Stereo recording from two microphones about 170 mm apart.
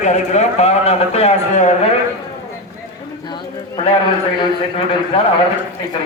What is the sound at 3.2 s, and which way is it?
Bird, 25° left (ahead or behind).